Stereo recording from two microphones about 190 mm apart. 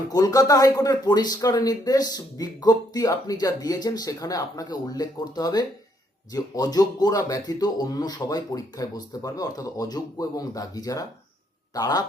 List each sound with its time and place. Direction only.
0.1 s a man's voice: 20° left (ahead or behind)